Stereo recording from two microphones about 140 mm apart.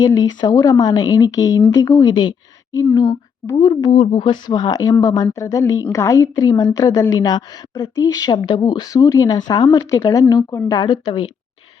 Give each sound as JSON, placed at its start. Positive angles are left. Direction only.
{"t": 0.0, "sound": "a woman's voice", "side_deg": 30}
{"t": 3.8, "sound": "a woman's voice", "side_deg": 50}